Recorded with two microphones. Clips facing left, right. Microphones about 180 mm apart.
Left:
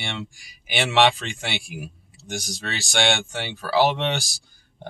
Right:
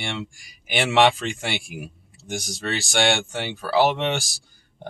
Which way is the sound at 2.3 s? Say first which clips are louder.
Right 4 dB; centre (ahead or behind).